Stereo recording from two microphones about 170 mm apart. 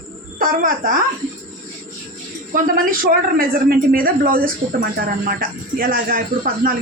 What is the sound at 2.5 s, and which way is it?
A woman's voice, 55° right (ahead or behind).